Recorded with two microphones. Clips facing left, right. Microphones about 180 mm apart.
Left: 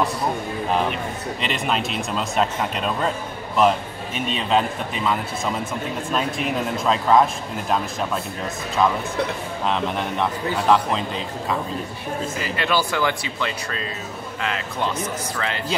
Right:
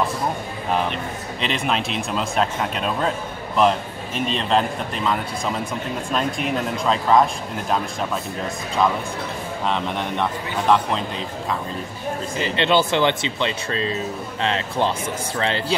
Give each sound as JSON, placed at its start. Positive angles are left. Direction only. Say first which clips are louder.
{"t": 1.4, "sound": "a man's voice", "louder": "right 1 dB", "side_deg": 0}
{"t": 9.7, "sound": "a man's voice", "louder": "left 1 dB", "side_deg": 0}
{"t": 12.4, "sound": "speech", "louder": "right 5 dB", "side_deg": -25}